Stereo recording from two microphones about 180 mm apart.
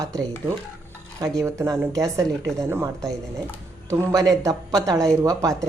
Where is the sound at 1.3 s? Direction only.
15° right (ahead or behind).